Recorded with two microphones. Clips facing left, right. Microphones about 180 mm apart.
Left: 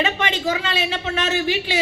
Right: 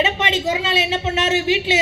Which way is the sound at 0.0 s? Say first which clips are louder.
Right 2 dB; 25° right (ahead or behind).